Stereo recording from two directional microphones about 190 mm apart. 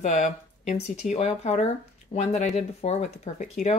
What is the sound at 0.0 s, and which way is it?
Speech, 40° left (ahead or behind).